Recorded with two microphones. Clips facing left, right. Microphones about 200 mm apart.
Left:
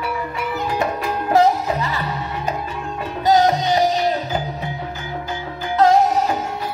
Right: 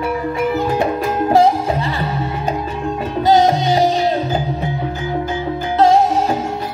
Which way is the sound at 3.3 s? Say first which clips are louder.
Right 2 dB; 30° right (ahead or behind).